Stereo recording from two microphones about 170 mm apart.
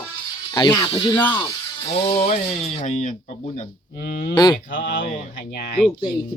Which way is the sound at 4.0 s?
65° left (ahead or behind).